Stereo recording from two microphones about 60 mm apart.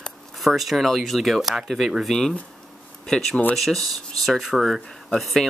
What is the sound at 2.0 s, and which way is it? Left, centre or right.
Speech, centre.